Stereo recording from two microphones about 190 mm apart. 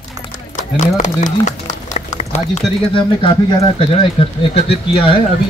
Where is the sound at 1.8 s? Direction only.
35° left (ahead or behind).